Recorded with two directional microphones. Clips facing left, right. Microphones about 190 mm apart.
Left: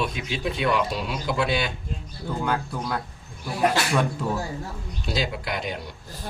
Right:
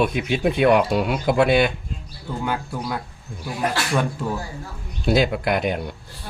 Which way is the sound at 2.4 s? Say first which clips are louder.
Right 2 dB; 5° right (ahead or behind).